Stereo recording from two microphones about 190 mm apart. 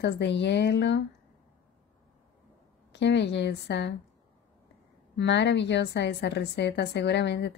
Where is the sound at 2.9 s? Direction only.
65° left (ahead or behind).